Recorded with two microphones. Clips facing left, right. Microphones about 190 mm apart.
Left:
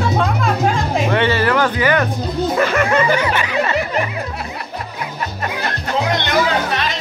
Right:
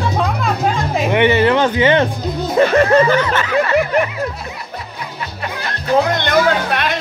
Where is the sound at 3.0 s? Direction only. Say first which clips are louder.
Right 2 dB; 10° left (ahead or behind).